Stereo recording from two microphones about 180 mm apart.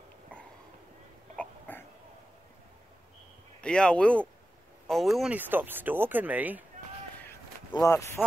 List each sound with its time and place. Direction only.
1.3 s cough: 10° left (ahead or behind)
3.6 s speech: 5° left (ahead or behind)
7.7 s speech: 15° left (ahead or behind)